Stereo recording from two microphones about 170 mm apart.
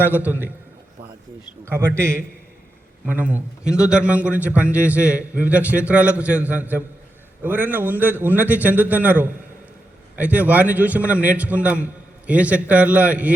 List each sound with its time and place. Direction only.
0.3 s a man's voice: 10° right (ahead or behind)
1.6 s a man's voice: 15° right (ahead or behind)